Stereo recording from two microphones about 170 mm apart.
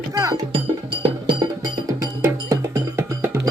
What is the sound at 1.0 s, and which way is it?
Music, 25° right (ahead or behind).